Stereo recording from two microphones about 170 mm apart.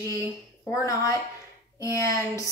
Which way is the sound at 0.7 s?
20° left (ahead or behind).